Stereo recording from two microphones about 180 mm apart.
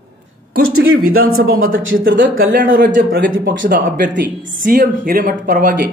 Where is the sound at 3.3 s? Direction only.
90° right.